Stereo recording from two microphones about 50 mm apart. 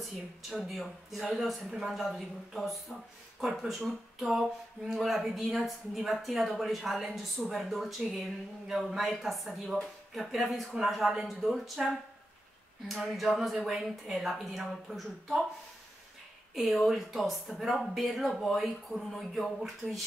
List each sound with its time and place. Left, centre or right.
0.7 s a man's voice: centre
16.5 s a man's voice: centre